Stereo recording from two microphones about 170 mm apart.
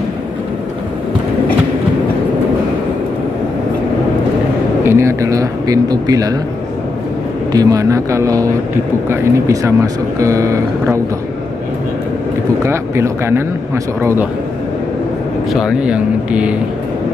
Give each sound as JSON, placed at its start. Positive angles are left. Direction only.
{"t": 4.8, "sound": "speech", "side_deg": -15}
{"t": 7.5, "sound": "speech", "side_deg": -20}
{"t": 12.6, "sound": "speech", "side_deg": -15}
{"t": 15.5, "sound": "speech", "side_deg": -5}